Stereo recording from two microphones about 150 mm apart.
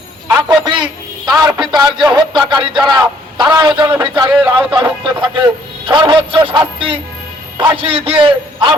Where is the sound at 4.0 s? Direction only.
30° right (ahead or behind).